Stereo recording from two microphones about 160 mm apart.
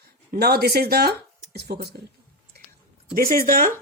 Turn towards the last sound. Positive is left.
turn(degrees=-60)  # may be behind; listen again after turning